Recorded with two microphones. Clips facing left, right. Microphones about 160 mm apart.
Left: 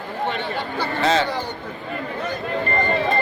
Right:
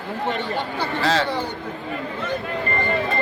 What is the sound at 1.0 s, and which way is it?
Speech, centre (ahead or behind).